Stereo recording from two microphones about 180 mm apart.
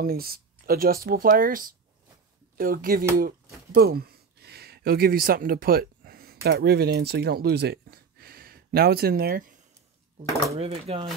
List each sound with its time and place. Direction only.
0.0 s speech: 55° right (ahead or behind)
3.7 s a sound: 60° right (ahead or behind)
6.4 s speech: 60° right (ahead or behind)
10.5 s speech: 35° right (ahead or behind)